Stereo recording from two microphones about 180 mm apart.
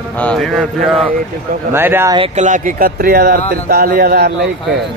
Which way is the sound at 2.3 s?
45° right (ahead or behind).